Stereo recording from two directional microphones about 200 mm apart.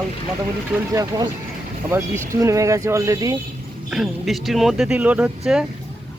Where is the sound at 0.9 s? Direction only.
20° right (ahead or behind).